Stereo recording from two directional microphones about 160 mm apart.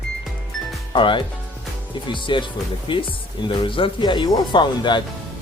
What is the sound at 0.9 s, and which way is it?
Speech, 30° left (ahead or behind).